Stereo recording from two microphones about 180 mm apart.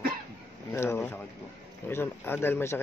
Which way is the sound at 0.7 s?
15° left (ahead or behind).